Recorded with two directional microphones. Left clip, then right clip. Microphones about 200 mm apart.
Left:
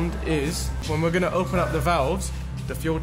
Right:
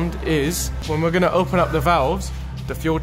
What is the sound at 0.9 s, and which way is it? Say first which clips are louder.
Speech: right 4 dB; 10° right (ahead or behind).